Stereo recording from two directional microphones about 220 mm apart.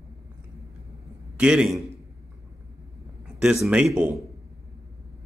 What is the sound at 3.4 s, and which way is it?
Speech, 5° right (ahead or behind).